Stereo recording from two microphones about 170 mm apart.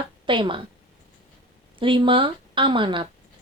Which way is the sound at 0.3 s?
30° right (ahead or behind).